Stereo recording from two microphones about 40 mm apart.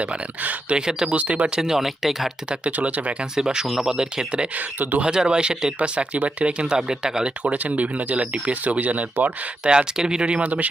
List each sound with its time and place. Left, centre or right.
0.0 s speech: right
0.9 s speech: centre
1.1 s speech: right
1.6 s speech: centre
2.5 s speech: right
3.3 s speech: centre
4.5 s speech: right
5.0 s speech: centre
6.7 s speech: centre
7.5 s speech: right
8.1 s speech: right
9.6 s speech: centre